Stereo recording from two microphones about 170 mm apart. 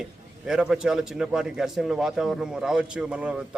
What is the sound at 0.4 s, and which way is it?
A man's voice, 5° right (ahead or behind).